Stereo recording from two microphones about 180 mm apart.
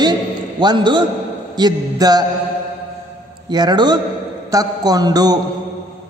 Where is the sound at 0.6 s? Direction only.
25° right (ahead or behind).